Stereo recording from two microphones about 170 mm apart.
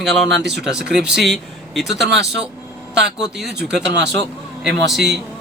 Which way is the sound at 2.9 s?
80° right.